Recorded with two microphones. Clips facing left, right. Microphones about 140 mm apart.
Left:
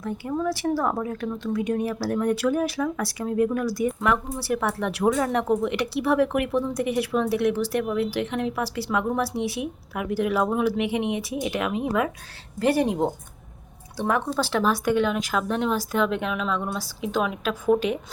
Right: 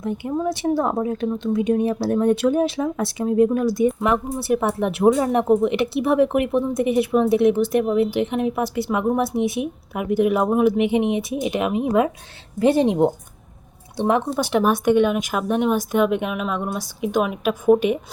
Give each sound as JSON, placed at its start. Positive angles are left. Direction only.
{"t": 0.0, "sound": "a woman's voice", "side_deg": -20}